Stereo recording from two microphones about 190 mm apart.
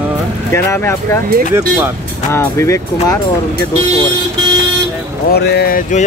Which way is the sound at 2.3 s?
15° left (ahead or behind).